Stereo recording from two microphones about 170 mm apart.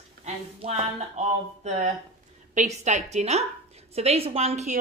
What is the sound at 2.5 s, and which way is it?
A woman's voice, 45° right (ahead or behind).